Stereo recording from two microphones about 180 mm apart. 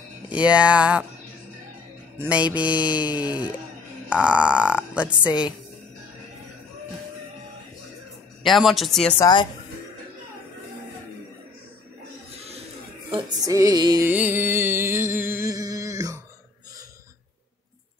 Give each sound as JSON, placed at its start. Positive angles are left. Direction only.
{"t": 0.4, "sound": "music", "side_deg": -5}
{"t": 2.2, "sound": "music", "side_deg": -5}
{"t": 4.2, "sound": "speech", "side_deg": -5}
{"t": 8.5, "sound": "speech", "side_deg": 0}
{"t": 9.2, "sound": "speech", "side_deg": 25}
{"t": 13.4, "sound": "music", "side_deg": -20}
{"t": 14.0, "sound": "music", "side_deg": -10}